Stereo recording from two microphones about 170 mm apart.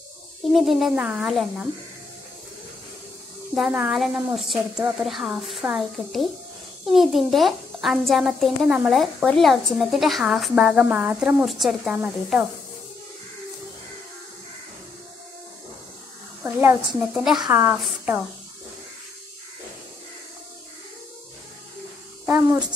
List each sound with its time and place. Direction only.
0.5 s a child's voice: centre (ahead or behind)
3.5 s a child's voice: 5° right (ahead or behind)
16.4 s a child's voice: 5° right (ahead or behind)
22.2 s a sound: 15° right (ahead or behind)